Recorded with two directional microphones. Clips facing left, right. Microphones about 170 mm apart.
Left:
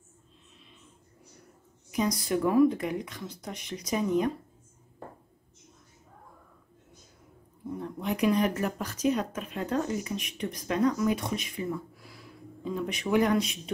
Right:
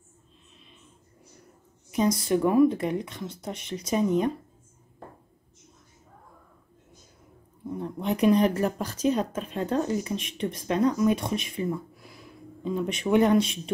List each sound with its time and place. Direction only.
1.9 s a woman's voice: 25° right (ahead or behind)
8.0 s a woman's voice: 30° right (ahead or behind)